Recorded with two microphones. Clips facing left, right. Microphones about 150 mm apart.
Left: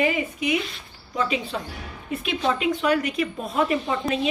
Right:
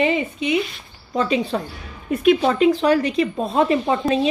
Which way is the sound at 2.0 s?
50° right (ahead or behind).